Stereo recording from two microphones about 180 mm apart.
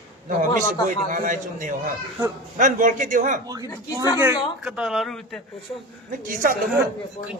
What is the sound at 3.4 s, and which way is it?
Speech, 20° right (ahead or behind).